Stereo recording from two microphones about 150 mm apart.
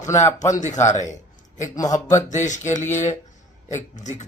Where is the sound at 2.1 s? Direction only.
55° left (ahead or behind).